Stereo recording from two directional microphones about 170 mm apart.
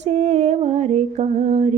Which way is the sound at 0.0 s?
40° right (ahead or behind).